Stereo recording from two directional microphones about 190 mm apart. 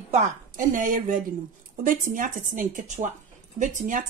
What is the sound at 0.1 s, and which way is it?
A woman's voice, 40° right (ahead or behind).